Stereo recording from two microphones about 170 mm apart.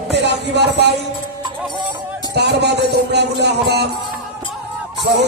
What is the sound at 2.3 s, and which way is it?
Music, 80° right.